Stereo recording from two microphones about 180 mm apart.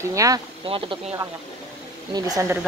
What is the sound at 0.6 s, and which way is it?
Speech, 30° right (ahead or behind).